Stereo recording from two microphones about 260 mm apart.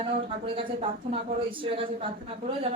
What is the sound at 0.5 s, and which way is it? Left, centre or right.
A woman's voice, right.